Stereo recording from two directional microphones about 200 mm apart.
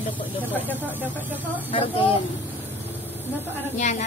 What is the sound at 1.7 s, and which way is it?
Speech, 25° left (ahead or behind).